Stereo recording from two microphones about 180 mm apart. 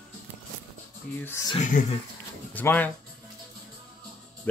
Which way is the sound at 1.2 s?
10° left (ahead or behind).